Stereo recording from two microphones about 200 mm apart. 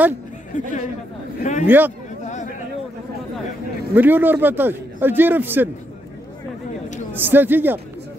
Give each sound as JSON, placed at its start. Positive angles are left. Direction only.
{"t": 0.5, "sound": "speech", "side_deg": 40}
{"t": 2.2, "sound": "a sound", "side_deg": 40}
{"t": 3.9, "sound": "a man's voice", "side_deg": -10}
{"t": 7.2, "sound": "a man's voice", "side_deg": -10}